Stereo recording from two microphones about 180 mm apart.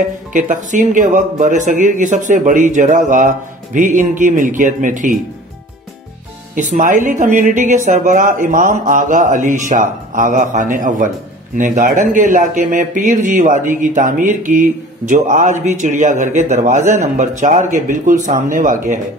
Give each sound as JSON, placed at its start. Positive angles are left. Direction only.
{"t": 0.3, "sound": "speech", "side_deg": -45}
{"t": 6.5, "sound": "speech", "side_deg": -45}